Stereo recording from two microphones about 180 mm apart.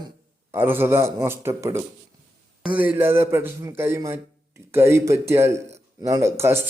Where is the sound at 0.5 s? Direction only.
10° right (ahead or behind).